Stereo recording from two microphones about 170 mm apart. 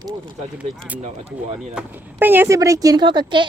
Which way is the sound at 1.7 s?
10° right (ahead or behind).